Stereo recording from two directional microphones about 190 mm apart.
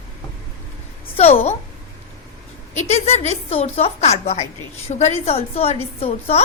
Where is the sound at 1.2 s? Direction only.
35° left (ahead or behind).